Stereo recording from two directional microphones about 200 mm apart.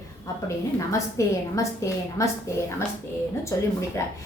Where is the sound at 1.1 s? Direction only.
15° left (ahead or behind).